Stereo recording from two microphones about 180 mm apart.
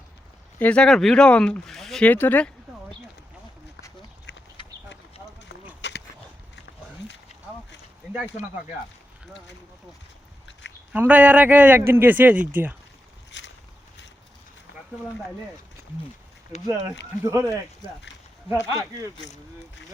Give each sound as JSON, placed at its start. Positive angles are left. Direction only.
{"t": 0.6, "sound": "speech", "side_deg": 5}
{"t": 5.8, "sound": "a sound", "side_deg": 80}
{"t": 10.9, "sound": "speech", "side_deg": -10}
{"t": 13.3, "sound": "boat", "side_deg": 80}
{"t": 17.2, "sound": "speech", "side_deg": -15}
{"t": 19.2, "sound": "speech", "side_deg": 80}